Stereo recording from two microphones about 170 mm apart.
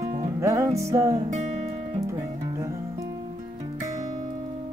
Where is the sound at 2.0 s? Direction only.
15° right (ahead or behind).